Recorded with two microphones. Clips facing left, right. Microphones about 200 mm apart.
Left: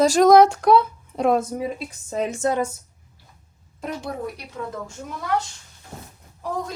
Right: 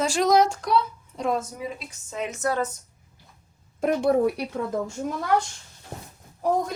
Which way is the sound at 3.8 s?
55° right (ahead or behind).